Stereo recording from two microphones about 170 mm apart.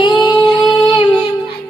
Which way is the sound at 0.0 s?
25° left (ahead or behind).